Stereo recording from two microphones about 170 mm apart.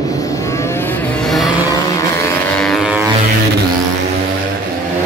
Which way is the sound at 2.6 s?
Centre (ahead or behind).